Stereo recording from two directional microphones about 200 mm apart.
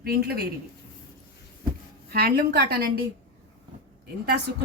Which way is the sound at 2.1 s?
50° right (ahead or behind).